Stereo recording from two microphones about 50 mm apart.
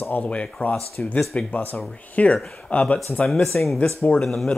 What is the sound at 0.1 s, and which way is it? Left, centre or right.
Speech, left.